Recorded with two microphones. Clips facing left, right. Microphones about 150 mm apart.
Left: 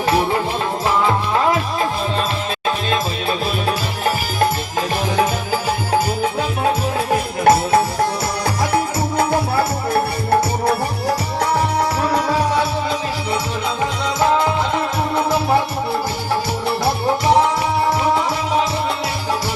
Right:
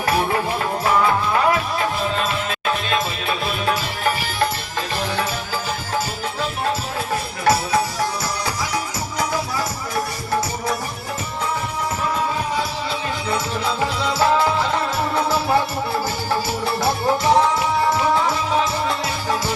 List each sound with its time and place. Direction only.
7.1 s music: 55° left (ahead or behind)
11.3 s music: 70° left (ahead or behind)
14.2 s music: 20° left (ahead or behind)